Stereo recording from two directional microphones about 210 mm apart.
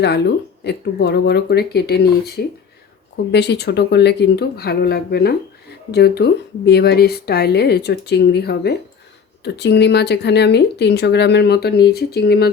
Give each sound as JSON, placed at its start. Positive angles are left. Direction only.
{"t": 0.0, "sound": "speech", "side_deg": 55}